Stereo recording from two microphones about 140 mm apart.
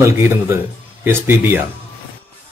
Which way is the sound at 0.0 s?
20° right (ahead or behind).